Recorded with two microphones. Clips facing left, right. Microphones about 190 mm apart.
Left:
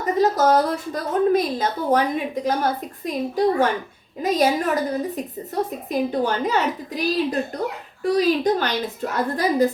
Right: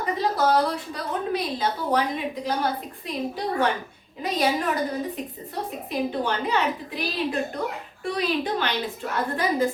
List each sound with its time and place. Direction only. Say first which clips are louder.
0.0 s a woman's voice: left 5 dB; 45° left (ahead or behind)